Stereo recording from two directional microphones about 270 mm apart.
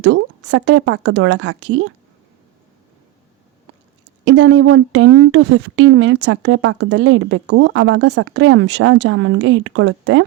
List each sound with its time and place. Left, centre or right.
0.0 s speech: right
4.3 s speech: right